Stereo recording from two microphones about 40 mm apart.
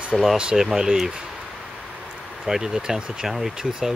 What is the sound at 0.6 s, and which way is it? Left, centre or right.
Speech, centre.